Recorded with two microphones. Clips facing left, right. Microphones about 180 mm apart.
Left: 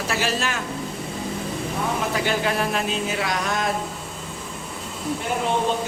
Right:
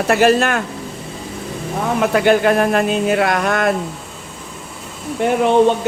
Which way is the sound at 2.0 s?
60° right (ahead or behind).